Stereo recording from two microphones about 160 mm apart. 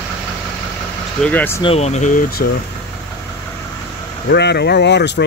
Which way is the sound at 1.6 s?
40° left (ahead or behind).